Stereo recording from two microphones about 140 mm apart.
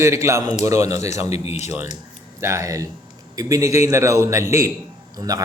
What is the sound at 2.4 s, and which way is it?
Speech, 20° right (ahead or behind).